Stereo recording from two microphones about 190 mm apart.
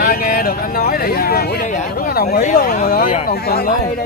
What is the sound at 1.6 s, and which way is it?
Speech, 40° left (ahead or behind).